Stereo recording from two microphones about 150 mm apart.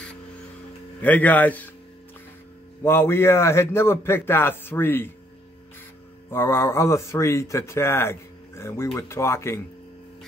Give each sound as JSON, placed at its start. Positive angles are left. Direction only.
{"t": 1.0, "sound": "speech", "side_deg": 10}
{"t": 2.8, "sound": "speech", "side_deg": 15}
{"t": 6.3, "sound": "speech", "side_deg": 15}